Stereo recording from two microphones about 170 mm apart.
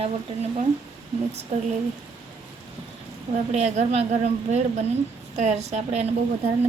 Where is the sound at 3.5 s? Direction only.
40° right (ahead or behind).